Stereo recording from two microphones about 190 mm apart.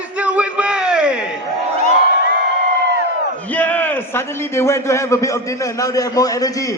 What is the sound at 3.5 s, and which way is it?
A man's voice, 10° left (ahead or behind).